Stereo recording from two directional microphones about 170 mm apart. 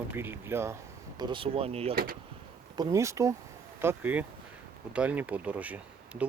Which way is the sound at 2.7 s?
15° right (ahead or behind).